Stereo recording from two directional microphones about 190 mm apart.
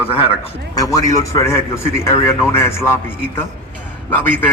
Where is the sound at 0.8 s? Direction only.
20° left (ahead or behind).